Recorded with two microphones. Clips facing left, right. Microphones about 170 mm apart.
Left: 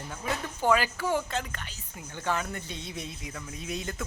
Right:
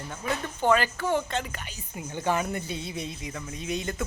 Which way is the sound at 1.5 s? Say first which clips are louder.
Right 4 dB; 15° right (ahead or behind).